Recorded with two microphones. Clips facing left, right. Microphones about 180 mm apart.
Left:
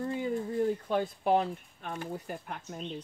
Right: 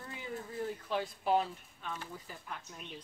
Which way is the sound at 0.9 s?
50° left (ahead or behind).